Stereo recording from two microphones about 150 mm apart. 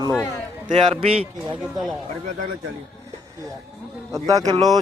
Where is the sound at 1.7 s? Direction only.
Centre (ahead or behind).